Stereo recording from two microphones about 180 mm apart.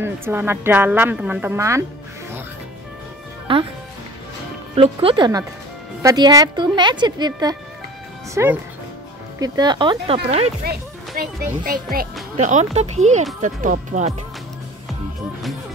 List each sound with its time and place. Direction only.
0.0 s speech: 10° right (ahead or behind)
3.5 s a woman's voice: 30° right (ahead or behind)
4.7 s a woman's voice: 30° right (ahead or behind)
10.6 s a child's voice: 55° right (ahead or behind)